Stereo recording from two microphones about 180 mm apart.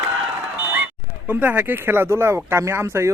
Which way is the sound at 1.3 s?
10° right (ahead or behind).